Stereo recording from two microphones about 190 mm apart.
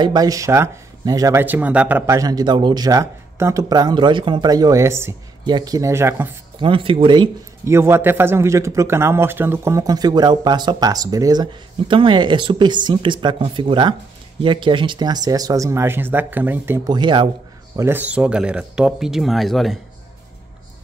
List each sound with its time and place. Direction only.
0.0 s speech: 20° right (ahead or behind)
6.6 s speech: 25° right (ahead or behind)
7.6 s speech: 15° right (ahead or behind)
17.7 s speech: 10° right (ahead or behind)